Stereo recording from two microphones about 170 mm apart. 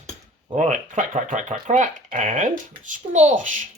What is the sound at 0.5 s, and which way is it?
Speech, 45° right (ahead or behind).